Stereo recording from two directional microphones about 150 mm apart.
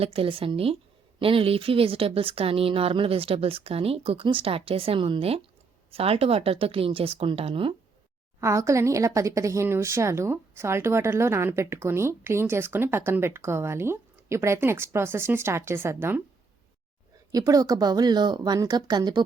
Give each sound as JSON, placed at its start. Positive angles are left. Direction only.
{"t": 0.0, "sound": "speech", "side_deg": -40}
{"t": 8.4, "sound": "speech", "side_deg": -20}
{"t": 17.3, "sound": "speech", "side_deg": -25}